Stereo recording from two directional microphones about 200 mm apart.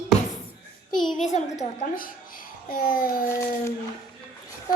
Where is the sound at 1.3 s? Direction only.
40° left (ahead or behind).